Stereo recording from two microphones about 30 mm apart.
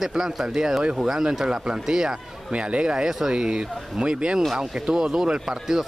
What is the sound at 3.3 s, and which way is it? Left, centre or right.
Speech, right.